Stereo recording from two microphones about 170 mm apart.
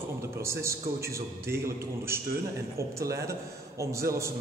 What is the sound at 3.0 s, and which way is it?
Speech, 20° right (ahead or behind).